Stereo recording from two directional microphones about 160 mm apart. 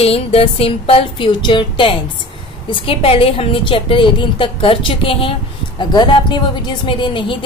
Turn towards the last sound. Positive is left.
turn(degrees=30)  # may be behind; listen again after turning